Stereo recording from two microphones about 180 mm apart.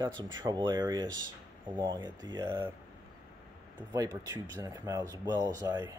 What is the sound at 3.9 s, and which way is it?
Speech, 20° right (ahead or behind).